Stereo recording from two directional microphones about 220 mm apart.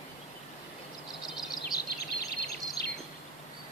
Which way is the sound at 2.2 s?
45° left (ahead or behind).